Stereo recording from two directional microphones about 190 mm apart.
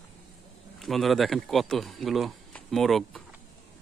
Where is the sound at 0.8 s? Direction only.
Centre (ahead or behind).